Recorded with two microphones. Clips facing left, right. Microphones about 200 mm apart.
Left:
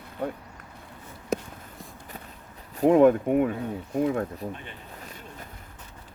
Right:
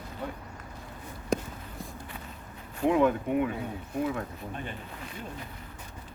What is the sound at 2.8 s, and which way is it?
Speech, 45° left (ahead or behind).